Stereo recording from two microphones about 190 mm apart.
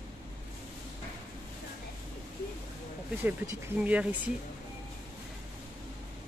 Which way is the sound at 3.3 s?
10° right (ahead or behind).